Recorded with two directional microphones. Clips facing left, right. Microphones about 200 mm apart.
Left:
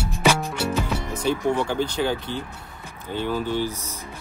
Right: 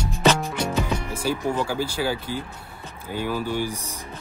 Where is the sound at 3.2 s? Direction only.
10° right (ahead or behind).